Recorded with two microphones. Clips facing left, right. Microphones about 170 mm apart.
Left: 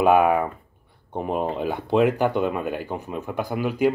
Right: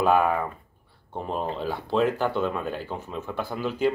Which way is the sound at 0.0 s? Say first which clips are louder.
Left 4 dB; 15° left (ahead or behind).